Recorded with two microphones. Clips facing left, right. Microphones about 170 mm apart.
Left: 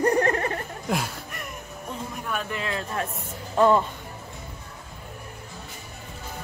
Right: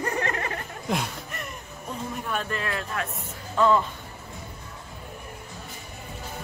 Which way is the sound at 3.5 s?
35° left (ahead or behind).